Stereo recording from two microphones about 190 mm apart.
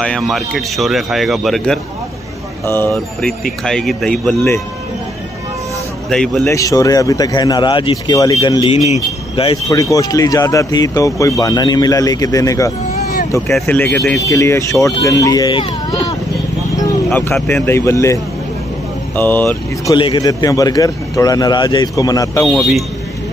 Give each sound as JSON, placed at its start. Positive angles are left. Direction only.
{"t": 0.0, "sound": "a man's voice", "side_deg": 5}
{"t": 6.0, "sound": "a man's voice", "side_deg": 0}
{"t": 6.5, "sound": "a man's voice", "side_deg": 15}
{"t": 8.8, "sound": "speech", "side_deg": 30}
{"t": 13.5, "sound": "a man's voice", "side_deg": 5}
{"t": 17.1, "sound": "speech", "side_deg": 10}
{"t": 20.0, "sound": "a man's voice", "side_deg": 25}
{"t": 22.5, "sound": "a man's voice", "side_deg": 0}